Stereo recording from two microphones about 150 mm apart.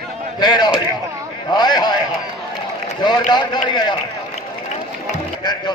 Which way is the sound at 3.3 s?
30° left (ahead or behind).